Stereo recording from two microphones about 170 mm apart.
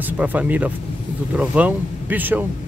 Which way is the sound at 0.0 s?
10° right (ahead or behind).